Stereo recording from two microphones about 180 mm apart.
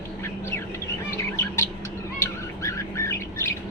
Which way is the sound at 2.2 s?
15° left (ahead or behind).